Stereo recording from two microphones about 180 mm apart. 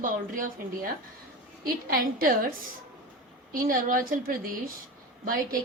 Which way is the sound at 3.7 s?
50° right (ahead or behind).